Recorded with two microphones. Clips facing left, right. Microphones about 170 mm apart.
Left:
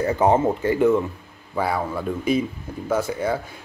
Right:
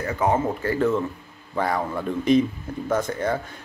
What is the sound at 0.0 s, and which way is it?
Speech, 30° left (ahead or behind).